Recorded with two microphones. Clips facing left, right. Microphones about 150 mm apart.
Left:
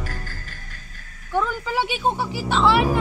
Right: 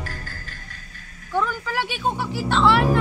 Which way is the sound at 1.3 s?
15° left (ahead or behind).